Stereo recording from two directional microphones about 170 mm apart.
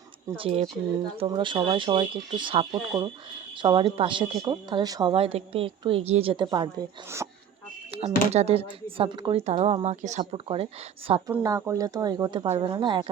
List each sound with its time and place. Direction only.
0.3 s a woman's voice: 35° right (ahead or behind)
7.2 s speech: 15° right (ahead or behind)
7.9 s a woman's voice: 35° right (ahead or behind)
11.3 s a woman's voice: 20° right (ahead or behind)